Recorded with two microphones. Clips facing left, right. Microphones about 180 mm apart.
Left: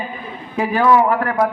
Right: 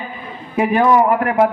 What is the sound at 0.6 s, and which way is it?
Speech, 20° right (ahead or behind).